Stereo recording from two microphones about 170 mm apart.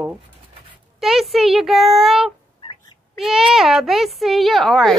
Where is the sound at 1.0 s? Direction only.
Centre (ahead or behind).